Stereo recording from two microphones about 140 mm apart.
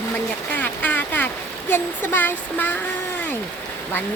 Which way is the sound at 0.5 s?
10° left (ahead or behind).